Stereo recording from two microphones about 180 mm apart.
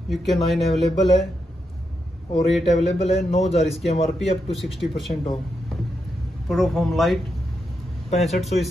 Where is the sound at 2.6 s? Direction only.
35° left (ahead or behind).